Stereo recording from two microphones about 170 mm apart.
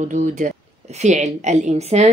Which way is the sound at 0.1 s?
45° right (ahead or behind).